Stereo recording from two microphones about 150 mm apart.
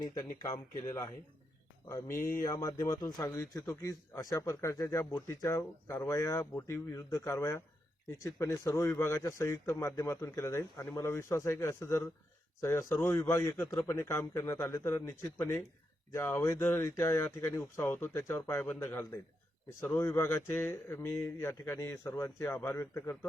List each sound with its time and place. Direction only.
0.0 s a man's voice: 25° left (ahead or behind)
2.4 s a man's voice: 20° left (ahead or behind)